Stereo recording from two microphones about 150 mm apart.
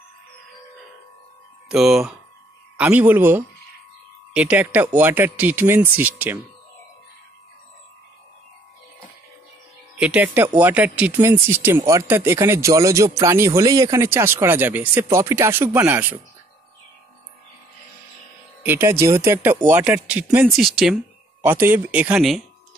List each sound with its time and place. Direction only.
1.7 s speech: 5° right (ahead or behind)
9.9 s speech: 10° right (ahead or behind)
18.6 s speech: 15° right (ahead or behind)
21.5 s speech: 15° right (ahead or behind)